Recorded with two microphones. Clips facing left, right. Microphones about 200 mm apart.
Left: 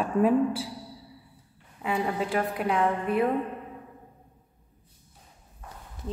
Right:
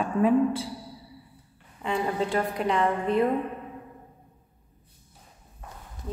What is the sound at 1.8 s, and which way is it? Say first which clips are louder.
A woman's voice: right 1 dB; 5° left (ahead or behind).